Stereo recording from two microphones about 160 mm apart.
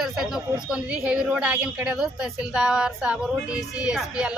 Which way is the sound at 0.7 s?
5° right (ahead or behind).